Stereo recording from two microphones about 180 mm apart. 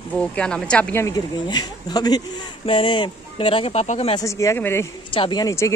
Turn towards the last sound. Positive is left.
turn(degrees=20)  # may be behind; listen again after turning